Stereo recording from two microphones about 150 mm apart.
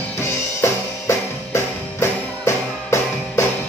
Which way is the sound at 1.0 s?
20° left (ahead or behind).